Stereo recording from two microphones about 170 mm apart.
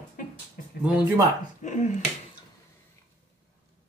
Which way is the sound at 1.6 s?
45° left (ahead or behind).